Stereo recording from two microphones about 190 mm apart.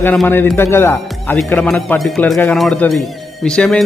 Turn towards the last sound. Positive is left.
turn(degrees=5)  # may be behind; listen again after turning